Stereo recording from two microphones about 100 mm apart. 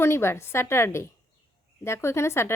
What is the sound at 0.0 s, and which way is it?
A woman's voice, 25° left (ahead or behind).